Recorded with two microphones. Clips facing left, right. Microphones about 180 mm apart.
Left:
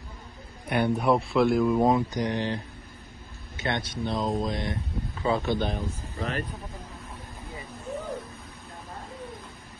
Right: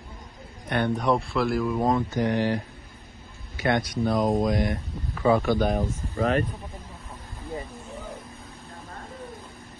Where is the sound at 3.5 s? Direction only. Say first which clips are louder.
Right 6 dB; 25° left (ahead or behind).